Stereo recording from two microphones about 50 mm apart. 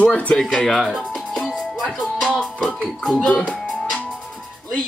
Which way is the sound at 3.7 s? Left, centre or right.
Centre.